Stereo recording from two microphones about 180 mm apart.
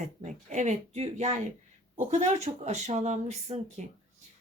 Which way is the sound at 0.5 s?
40° right (ahead or behind).